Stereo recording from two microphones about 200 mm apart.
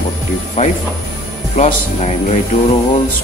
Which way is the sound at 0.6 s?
35° left (ahead or behind).